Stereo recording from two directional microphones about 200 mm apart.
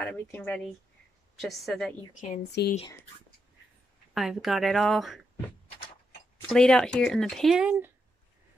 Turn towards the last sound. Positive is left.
turn(degrees=-5)  # may be behind; listen again after turning